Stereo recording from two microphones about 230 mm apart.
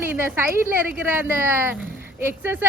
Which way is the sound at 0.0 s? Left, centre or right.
Centre.